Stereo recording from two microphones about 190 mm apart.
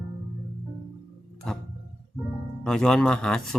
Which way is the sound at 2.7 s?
5° left (ahead or behind).